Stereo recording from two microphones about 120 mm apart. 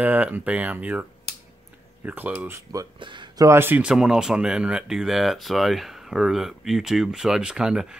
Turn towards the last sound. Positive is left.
turn(degrees=-5)  # may be behind; listen again after turning